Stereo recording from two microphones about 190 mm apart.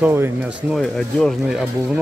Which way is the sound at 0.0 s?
10° right (ahead or behind).